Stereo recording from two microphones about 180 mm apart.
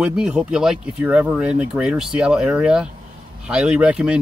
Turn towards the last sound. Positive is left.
turn(degrees=-5)  # may be behind; listen again after turning